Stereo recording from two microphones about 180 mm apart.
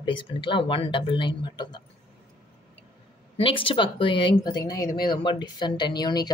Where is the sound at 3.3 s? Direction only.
30° left (ahead or behind).